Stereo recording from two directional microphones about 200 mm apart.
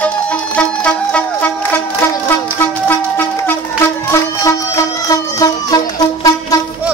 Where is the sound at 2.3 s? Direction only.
10° left (ahead or behind).